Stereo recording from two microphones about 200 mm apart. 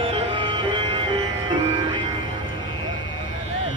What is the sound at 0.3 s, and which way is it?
Music, 25° right (ahead or behind).